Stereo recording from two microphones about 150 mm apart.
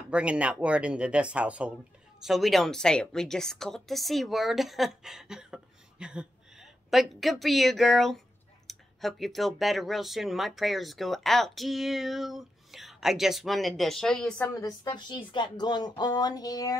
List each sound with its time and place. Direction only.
0.1 s a woman's voice: 10° right (ahead or behind)
14.6 s speech: 30° left (ahead or behind)